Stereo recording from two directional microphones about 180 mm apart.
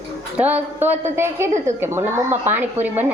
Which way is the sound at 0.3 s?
10° right (ahead or behind).